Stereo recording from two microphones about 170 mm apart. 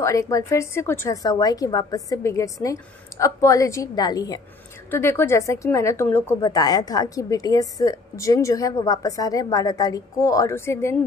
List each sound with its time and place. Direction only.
0.0 s a woman's voice: 20° left (ahead or behind)